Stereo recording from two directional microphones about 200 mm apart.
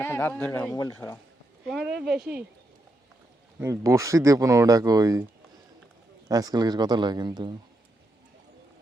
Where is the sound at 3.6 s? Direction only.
15° right (ahead or behind).